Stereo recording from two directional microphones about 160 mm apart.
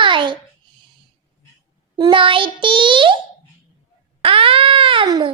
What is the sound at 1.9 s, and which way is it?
A child's voice, 30° right (ahead or behind).